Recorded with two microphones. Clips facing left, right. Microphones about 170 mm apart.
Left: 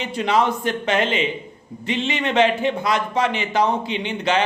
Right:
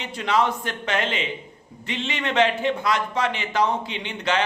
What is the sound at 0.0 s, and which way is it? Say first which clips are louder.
A man's voice: left 3 dB; 20° left (ahead or behind).